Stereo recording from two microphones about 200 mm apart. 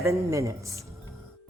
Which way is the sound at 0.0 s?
15° right (ahead or behind).